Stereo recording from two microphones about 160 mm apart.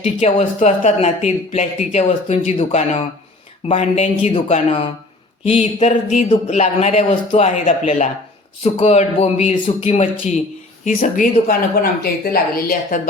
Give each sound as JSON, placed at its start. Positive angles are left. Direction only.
{"t": 0.0, "sound": "a man's voice", "side_deg": 40}
{"t": 10.8, "sound": "speech", "side_deg": 55}
{"t": 12.3, "sound": "a woman's voice", "side_deg": 70}